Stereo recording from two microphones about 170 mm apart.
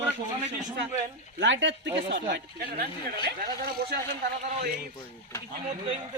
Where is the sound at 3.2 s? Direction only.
60° right (ahead or behind).